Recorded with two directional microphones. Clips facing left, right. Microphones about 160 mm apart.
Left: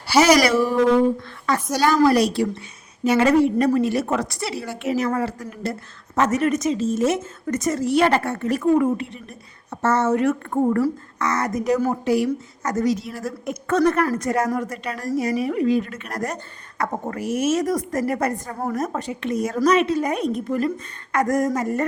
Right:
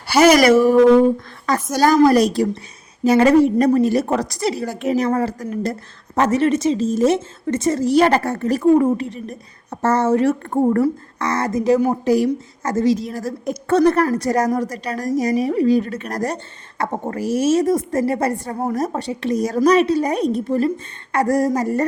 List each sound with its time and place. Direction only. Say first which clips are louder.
0.1 s a woman's voice: right 4 dB; 50° right (ahead or behind); by 21.8 s 35° right (ahead or behind)